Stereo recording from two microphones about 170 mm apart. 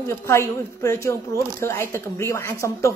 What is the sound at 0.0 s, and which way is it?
Speech, 15° left (ahead or behind).